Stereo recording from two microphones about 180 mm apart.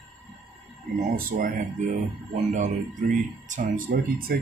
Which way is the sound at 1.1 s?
45° right (ahead or behind).